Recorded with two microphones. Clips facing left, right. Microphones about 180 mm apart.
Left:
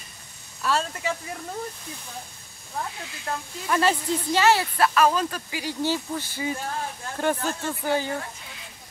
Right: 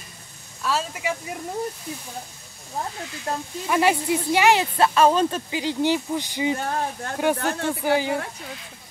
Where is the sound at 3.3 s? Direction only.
35° right (ahead or behind).